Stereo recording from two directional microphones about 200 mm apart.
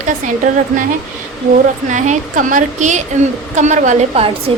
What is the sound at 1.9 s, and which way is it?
A woman's voice, 35° right (ahead or behind).